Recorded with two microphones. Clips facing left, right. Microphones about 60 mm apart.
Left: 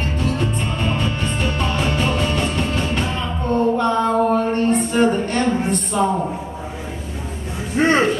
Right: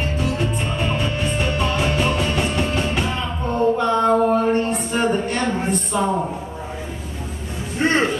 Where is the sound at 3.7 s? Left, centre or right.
Centre.